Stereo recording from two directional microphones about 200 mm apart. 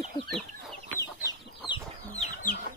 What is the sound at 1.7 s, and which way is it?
Chicken, 35° left (ahead or behind).